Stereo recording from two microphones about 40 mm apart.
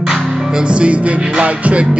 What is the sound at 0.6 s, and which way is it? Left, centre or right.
Music, right.